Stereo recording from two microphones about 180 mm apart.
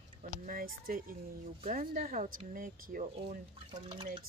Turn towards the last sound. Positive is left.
turn(degrees=-30)  # may be behind; listen again after turning